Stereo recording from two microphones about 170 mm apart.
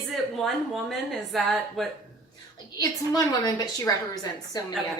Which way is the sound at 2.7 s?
20° left (ahead or behind).